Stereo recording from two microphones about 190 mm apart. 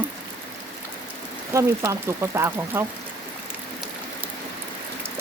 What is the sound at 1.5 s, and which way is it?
Speech, 15° right (ahead or behind).